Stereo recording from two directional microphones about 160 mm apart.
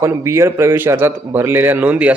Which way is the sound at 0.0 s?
15° right (ahead or behind).